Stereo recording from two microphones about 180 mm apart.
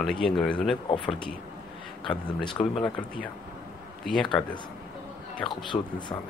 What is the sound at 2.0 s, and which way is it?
Speech, 25° left (ahead or behind).